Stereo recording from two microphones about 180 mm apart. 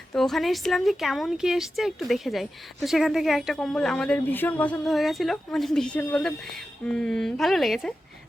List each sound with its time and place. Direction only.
0.1 s speech: centre (ahead or behind)